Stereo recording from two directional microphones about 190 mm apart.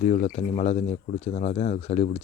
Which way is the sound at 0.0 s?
40° left (ahead or behind).